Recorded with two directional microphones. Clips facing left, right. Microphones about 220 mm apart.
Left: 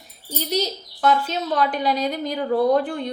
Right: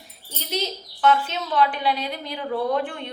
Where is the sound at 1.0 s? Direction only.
40° left (ahead or behind).